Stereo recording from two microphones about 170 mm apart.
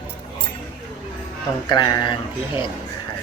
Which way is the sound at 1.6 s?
25° left (ahead or behind).